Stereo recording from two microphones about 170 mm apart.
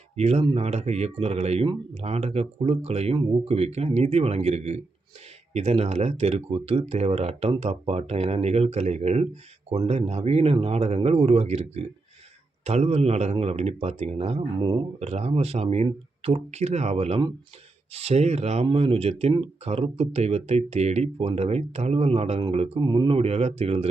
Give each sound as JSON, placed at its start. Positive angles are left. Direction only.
{"t": 0.2, "sound": "speech", "side_deg": -40}